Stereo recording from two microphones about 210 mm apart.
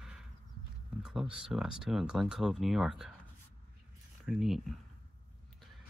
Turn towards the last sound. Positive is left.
turn(degrees=0)  # may be behind; listen again after turning